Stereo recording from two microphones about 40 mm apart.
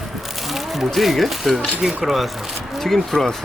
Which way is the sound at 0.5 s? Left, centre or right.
Centre.